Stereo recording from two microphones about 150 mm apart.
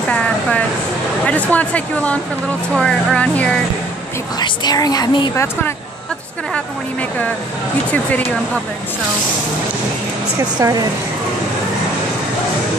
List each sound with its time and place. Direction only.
0.1 s vehicle: 10° left (ahead or behind)
1.2 s speech: 10° left (ahead or behind)
4.4 s speech: 25° left (ahead or behind)
5.3 s speech: 15° left (ahead or behind)
7.9 s speech: 10° left (ahead or behind)
10.6 s speech: 25° right (ahead or behind)